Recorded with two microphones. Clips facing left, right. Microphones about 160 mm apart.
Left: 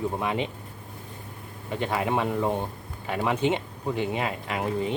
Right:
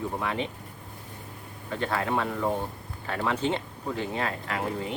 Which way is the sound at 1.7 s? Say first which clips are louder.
Left 2 dB; 15° left (ahead or behind).